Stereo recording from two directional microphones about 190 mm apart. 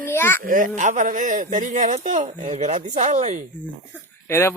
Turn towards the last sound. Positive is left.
turn(degrees=15)  # may be behind; listen again after turning